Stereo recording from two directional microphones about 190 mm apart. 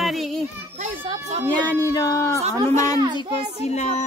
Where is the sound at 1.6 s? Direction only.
10° left (ahead or behind).